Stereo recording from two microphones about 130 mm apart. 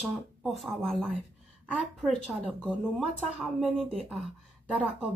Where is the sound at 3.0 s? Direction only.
Centre (ahead or behind).